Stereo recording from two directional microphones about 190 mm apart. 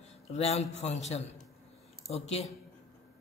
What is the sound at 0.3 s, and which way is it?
Speech, 35° left (ahead or behind).